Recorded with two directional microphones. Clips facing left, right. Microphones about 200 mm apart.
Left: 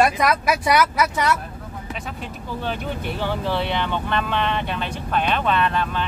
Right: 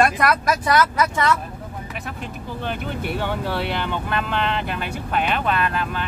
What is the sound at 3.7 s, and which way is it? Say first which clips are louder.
Speech: left 1 dB; 5° right (ahead or behind).